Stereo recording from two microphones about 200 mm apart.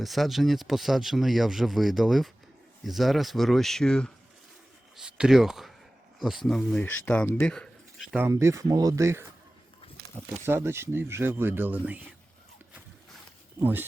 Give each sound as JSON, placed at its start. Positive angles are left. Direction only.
{"t": 0.0, "sound": "speech", "side_deg": 0}
{"t": 8.2, "sound": "speech", "side_deg": -15}
{"t": 10.4, "sound": "speech", "side_deg": -15}